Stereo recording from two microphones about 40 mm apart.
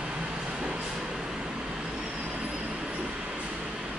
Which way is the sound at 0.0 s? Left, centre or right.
Right.